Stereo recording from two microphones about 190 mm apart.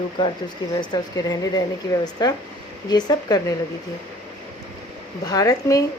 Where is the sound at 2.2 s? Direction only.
20° left (ahead or behind).